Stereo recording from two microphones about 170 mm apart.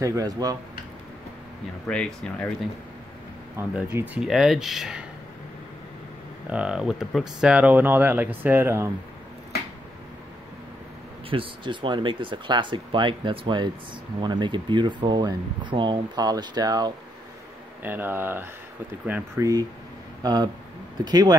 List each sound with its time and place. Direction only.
0.0 s speech: 20° right (ahead or behind)
1.9 s speech: 5° left (ahead or behind)
3.5 s speech: 10° right (ahead or behind)
6.5 s speech: 5° right (ahead or behind)
11.2 s speech: 30° right (ahead or behind)
17.8 s speech: 10° right (ahead or behind)